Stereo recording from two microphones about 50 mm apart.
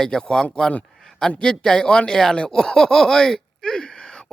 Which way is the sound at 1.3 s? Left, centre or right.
Centre.